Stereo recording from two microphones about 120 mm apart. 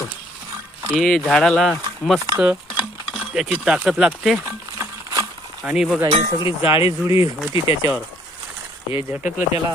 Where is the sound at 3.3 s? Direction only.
Centre (ahead or behind).